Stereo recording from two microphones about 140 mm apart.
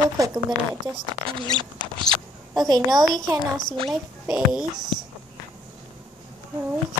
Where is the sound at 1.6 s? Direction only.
35° right (ahead or behind).